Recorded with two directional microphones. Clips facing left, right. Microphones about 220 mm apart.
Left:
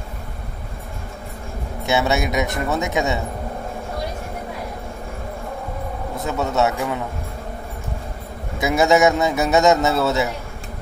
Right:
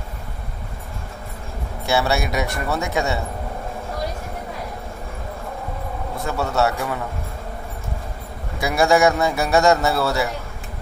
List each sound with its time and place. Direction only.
1.9 s a man's voice: 20° left (ahead or behind)
6.1 s a man's voice: 20° left (ahead or behind)
8.5 s a man's voice: 20° left (ahead or behind)